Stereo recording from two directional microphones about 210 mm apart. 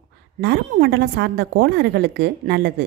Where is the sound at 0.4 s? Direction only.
50° right (ahead or behind).